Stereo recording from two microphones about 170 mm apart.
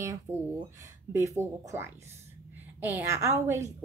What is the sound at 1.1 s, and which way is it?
A woman's voice, 15° right (ahead or behind).